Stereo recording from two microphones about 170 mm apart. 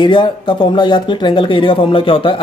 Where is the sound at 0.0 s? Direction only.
30° left (ahead or behind).